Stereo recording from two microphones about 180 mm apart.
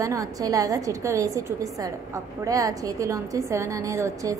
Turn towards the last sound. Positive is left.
turn(degrees=-15)  # may be behind; listen again after turning